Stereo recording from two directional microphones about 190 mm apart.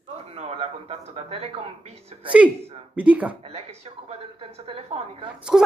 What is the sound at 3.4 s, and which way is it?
Speech, 30° right (ahead or behind).